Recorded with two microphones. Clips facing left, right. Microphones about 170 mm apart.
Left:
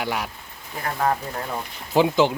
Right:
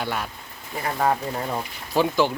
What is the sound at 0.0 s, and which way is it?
Speech, 10° left (ahead or behind).